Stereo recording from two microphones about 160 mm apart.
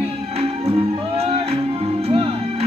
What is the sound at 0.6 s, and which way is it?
Music, 35° right (ahead or behind).